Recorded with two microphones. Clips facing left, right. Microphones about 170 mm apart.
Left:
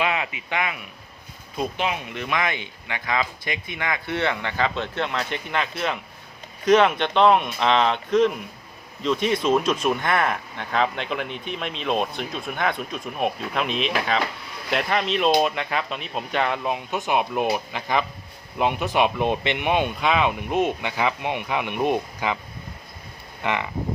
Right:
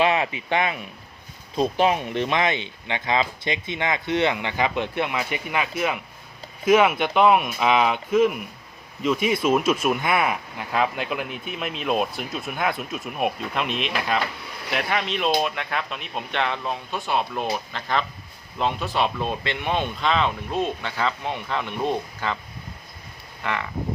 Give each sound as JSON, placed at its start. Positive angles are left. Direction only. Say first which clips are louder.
{"t": 0.0, "sound": "speech", "louder": "right 4 dB", "side_deg": -30}
{"t": 23.4, "sound": "speech", "louder": "left 3 dB", "side_deg": 20}